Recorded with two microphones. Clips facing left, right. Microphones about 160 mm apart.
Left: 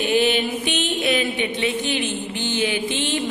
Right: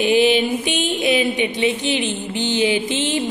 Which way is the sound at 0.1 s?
15° right (ahead or behind).